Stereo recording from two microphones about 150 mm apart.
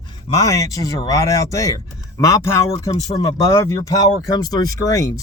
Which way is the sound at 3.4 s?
20° left (ahead or behind).